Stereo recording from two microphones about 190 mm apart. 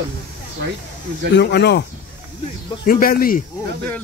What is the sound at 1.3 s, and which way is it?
Speech, 60° left (ahead or behind).